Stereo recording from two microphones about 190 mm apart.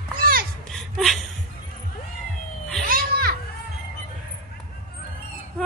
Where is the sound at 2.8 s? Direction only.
50° right (ahead or behind).